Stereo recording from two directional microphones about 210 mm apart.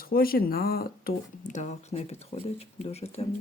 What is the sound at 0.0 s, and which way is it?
Speech, 45° left (ahead or behind).